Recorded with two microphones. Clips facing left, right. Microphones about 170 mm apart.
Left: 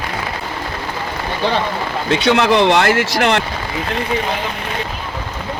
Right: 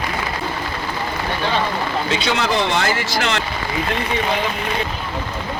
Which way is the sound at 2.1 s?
65° left (ahead or behind).